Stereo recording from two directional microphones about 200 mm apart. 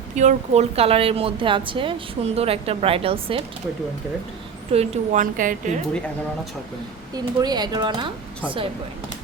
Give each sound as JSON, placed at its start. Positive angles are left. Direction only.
{"t": 0.2, "sound": "a woman's voice", "side_deg": -35}
{"t": 4.7, "sound": "a woman's voice", "side_deg": -35}
{"t": 7.1, "sound": "a woman's voice", "side_deg": -20}